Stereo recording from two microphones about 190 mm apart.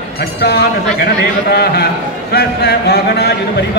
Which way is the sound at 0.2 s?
55° left (ahead or behind).